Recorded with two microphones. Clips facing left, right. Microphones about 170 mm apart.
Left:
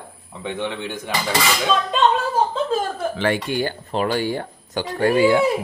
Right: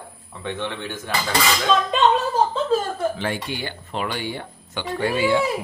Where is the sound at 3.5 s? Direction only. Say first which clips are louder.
Left 7 dB; 45° left (ahead or behind).